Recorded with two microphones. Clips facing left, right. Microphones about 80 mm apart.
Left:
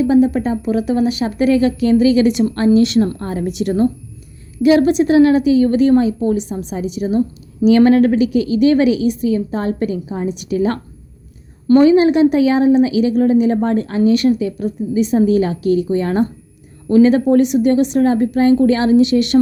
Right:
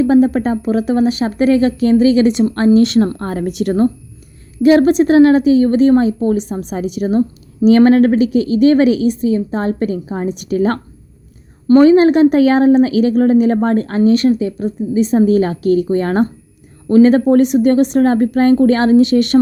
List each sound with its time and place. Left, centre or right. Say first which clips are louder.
0.0 s a woman's voice: right 2 dB; right
7.2 s a woman's voice: right 2 dB; right
11.8 s speech: right 3 dB; right